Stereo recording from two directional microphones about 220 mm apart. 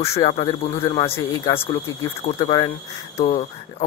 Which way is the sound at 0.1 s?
25° left (ahead or behind).